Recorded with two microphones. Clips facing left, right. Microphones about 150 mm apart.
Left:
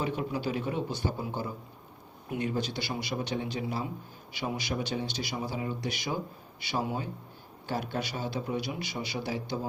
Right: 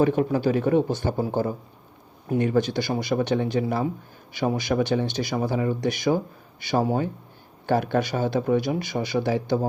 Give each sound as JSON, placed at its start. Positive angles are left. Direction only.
{"t": 0.0, "sound": "speech", "side_deg": -50}
{"t": 3.2, "sound": "speech", "side_deg": -60}
{"t": 4.7, "sound": "speech", "side_deg": -60}